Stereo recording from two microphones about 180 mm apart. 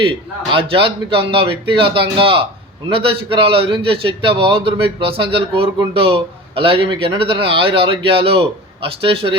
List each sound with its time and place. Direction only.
0.5 s a man's voice: 30° right (ahead or behind)